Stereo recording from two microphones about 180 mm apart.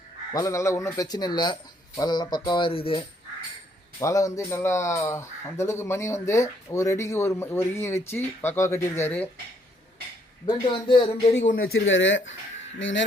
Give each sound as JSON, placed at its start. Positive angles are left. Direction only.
{"t": 0.3, "sound": "speech", "side_deg": 15}
{"t": 4.0, "sound": "speech", "side_deg": 15}
{"t": 10.4, "sound": "speech", "side_deg": 30}
{"t": 11.6, "sound": "speech", "side_deg": 90}